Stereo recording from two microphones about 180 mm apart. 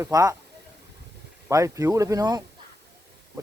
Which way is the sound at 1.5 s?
15° right (ahead or behind).